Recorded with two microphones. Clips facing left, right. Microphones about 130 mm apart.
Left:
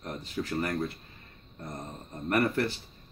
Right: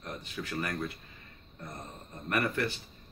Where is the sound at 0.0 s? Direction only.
35° left (ahead or behind).